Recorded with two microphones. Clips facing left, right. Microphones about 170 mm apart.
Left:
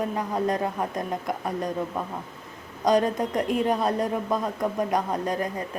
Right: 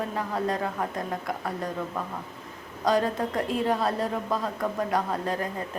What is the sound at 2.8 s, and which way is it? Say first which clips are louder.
A woman's voice: left 3 dB; 20° left (ahead or behind).